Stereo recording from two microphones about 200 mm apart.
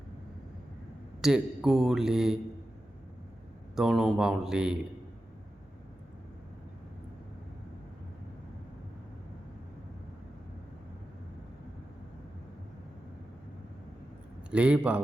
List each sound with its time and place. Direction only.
1.2 s a man's voice: centre (ahead or behind)
3.8 s a man's voice: centre (ahead or behind)
14.5 s a man's voice: 5° right (ahead or behind)